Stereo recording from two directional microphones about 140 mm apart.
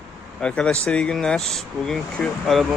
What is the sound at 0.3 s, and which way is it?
Speech, 5° left (ahead or behind).